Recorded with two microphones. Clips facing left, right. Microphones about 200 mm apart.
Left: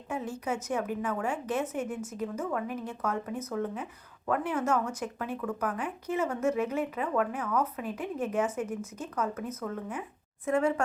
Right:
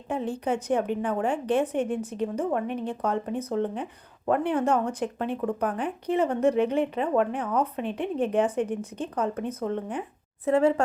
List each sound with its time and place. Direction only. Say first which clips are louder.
0.1 s speech: right 6 dB; 30° right (ahead or behind)